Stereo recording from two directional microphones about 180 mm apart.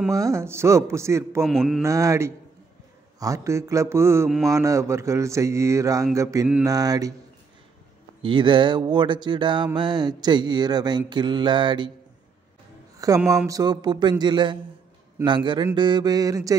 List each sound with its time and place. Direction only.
0.1 s mantra: 15° right (ahead or behind)
1.4 s speech: centre (ahead or behind)
1.8 s mantra: 15° right (ahead or behind)
8.2 s mantra: 25° right (ahead or behind)
13.0 s mantra: 20° right (ahead or behind)